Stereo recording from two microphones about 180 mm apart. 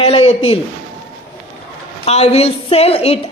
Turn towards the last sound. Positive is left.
turn(degrees=35)  # may be behind; listen again after turning